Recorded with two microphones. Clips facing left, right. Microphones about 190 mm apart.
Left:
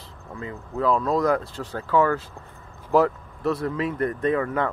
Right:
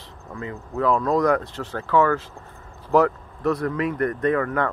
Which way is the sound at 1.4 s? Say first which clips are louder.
Right 1 dB; 10° left (ahead or behind).